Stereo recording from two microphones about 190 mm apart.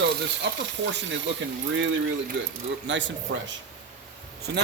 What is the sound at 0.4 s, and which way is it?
Speech, 65° right (ahead or behind).